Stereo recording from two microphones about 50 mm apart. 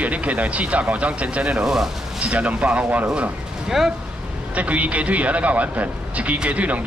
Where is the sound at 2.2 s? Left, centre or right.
Right.